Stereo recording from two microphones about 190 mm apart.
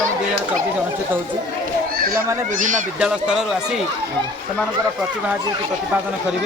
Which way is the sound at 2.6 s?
40° right (ahead or behind).